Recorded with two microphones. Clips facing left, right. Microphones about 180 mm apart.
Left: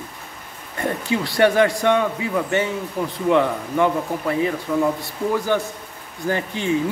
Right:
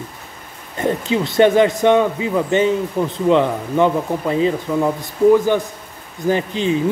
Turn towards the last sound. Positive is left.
turn(degrees=-20)  # may be behind; listen again after turning